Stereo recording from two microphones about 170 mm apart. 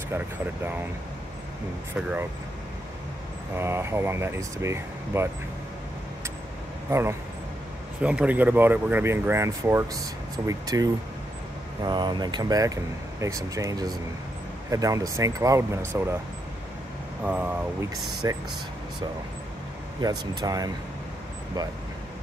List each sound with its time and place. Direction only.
3.5 s speech: 15° right (ahead or behind)
6.9 s speech: 15° right (ahead or behind)
17.2 s speech: 10° right (ahead or behind)
18.2 s speech: 20° right (ahead or behind)
20.0 s speech: 25° right (ahead or behind)